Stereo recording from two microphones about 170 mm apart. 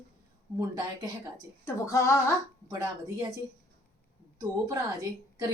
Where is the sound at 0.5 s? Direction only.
25° right (ahead or behind).